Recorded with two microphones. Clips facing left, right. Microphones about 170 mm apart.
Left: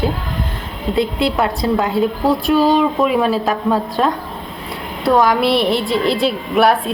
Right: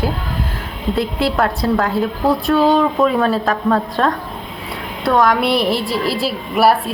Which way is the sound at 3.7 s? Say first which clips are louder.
Right 1 dB; centre (ahead or behind).